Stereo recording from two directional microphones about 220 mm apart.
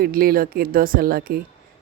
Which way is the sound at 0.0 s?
45° right (ahead or behind).